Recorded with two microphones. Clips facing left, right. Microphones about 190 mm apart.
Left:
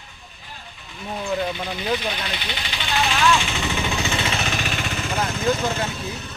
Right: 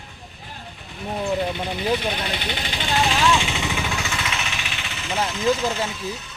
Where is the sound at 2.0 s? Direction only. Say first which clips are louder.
Right 2 dB; 55° right (ahead or behind).